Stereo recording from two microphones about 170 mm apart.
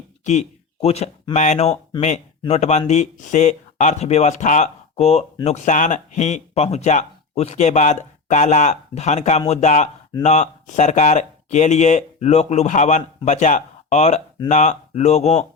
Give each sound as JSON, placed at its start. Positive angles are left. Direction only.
{"t": 0.3, "sound": "speech", "side_deg": 40}